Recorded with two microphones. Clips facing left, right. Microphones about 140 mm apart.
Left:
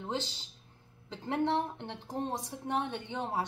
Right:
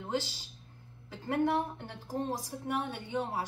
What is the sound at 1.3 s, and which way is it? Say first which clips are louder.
A woman's voice: right 1 dB; 25° left (ahead or behind).